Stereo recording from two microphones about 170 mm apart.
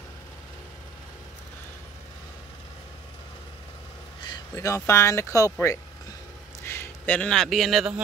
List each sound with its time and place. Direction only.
4.2 s speech: 20° left (ahead or behind); by 7.9 s centre (ahead or behind)